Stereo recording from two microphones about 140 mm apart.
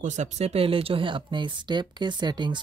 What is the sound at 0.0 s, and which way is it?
Speech, 60° right (ahead or behind).